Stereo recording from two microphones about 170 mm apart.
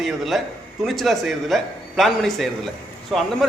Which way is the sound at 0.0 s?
Centre (ahead or behind).